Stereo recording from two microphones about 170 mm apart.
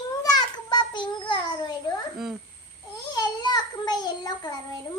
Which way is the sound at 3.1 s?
25° left (ahead or behind).